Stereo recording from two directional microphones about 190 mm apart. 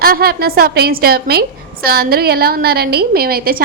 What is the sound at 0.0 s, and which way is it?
A woman's voice, 55° right (ahead or behind).